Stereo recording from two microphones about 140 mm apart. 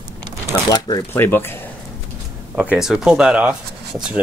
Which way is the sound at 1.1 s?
15° left (ahead or behind).